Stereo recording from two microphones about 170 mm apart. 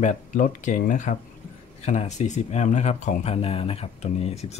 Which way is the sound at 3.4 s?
35° left (ahead or behind).